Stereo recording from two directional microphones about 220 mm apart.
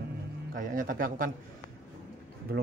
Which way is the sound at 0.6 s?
40° right (ahead or behind).